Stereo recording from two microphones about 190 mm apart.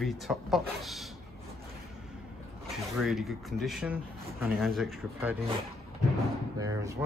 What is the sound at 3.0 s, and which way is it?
Speech, centre (ahead or behind).